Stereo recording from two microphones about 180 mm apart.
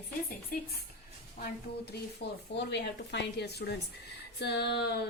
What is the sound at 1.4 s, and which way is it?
Speech, 65° left (ahead or behind).